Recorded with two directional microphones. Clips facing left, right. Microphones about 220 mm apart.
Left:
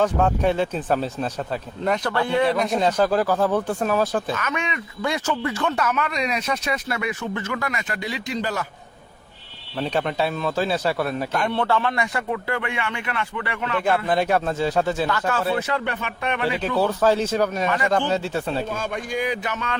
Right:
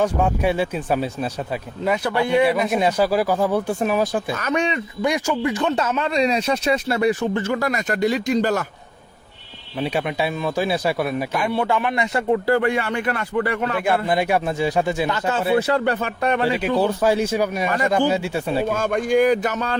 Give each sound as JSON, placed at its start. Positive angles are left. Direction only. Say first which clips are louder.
{"t": 0.0, "sound": "speech", "louder": "even", "side_deg": -10}
{"t": 4.4, "sound": "speech", "louder": "right 6 dB", "side_deg": -35}
{"t": 5.0, "sound": "speech", "louder": "right 3 dB", "side_deg": -15}
{"t": 9.7, "sound": "speech", "louder": "right 1 dB", "side_deg": -10}
{"t": 12.1, "sound": "speech", "louder": "right 8 dB", "side_deg": -30}
{"t": 13.8, "sound": "speech", "louder": "left 1 dB", "side_deg": -10}
{"t": 15.5, "sound": "speech", "louder": "right 6 dB", "side_deg": -35}
{"t": 16.6, "sound": "speech", "louder": "right 2 dB", "side_deg": -15}
{"t": 17.7, "sound": "speech", "louder": "right 2 dB", "side_deg": -40}
{"t": 17.9, "sound": "speech", "louder": "right 2 dB", "side_deg": -10}
{"t": 18.6, "sound": "a man's voice", "louder": "right 7 dB", "side_deg": -55}